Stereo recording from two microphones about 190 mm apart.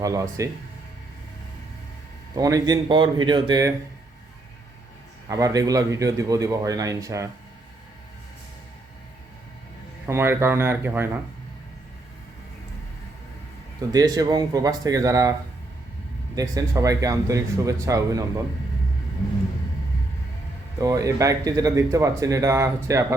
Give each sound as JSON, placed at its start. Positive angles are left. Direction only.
{"t": 0.0, "sound": "speech", "side_deg": -15}
{"t": 2.3, "sound": "speech", "side_deg": -20}
{"t": 5.3, "sound": "speech", "side_deg": -20}
{"t": 10.1, "sound": "speech", "side_deg": -15}
{"t": 13.9, "sound": "speech", "side_deg": -20}
{"t": 20.8, "sound": "speech", "side_deg": -15}